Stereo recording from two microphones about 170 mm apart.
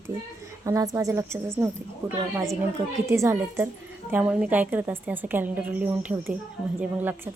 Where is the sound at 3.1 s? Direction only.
15° right (ahead or behind).